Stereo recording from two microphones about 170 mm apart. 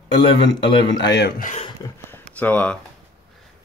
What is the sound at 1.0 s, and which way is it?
Speech, 80° left.